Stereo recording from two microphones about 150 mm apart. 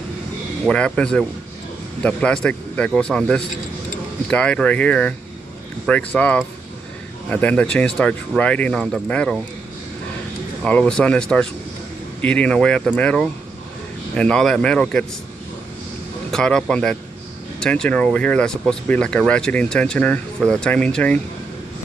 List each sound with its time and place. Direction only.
0.7 s speech: 5° left (ahead or behind)
10.6 s speech: 5° left (ahead or behind)
16.3 s speech: 5° left (ahead or behind)